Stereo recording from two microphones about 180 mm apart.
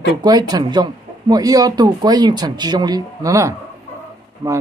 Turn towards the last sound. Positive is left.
turn(degrees=-20)  # may be behind; listen again after turning